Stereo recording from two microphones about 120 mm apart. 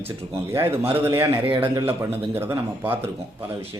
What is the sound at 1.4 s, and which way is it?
Speech, 45° right (ahead or behind).